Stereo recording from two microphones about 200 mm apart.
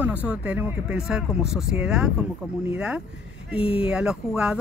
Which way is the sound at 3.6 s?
25° left (ahead or behind).